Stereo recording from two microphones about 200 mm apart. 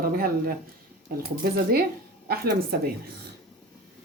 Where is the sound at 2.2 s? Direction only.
50° right (ahead or behind).